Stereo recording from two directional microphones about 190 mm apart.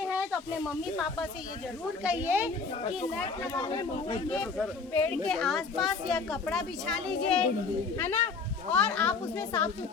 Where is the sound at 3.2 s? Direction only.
25° left (ahead or behind).